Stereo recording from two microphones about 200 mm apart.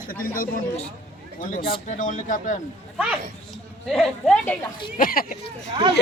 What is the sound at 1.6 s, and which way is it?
Speech, 30° left (ahead or behind).